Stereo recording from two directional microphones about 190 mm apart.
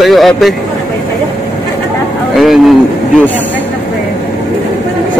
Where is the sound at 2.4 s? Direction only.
Centre (ahead or behind).